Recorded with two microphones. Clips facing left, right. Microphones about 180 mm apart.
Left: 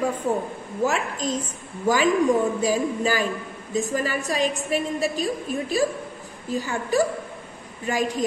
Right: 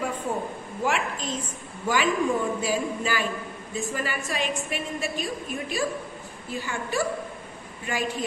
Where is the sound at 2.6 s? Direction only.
40° left (ahead or behind).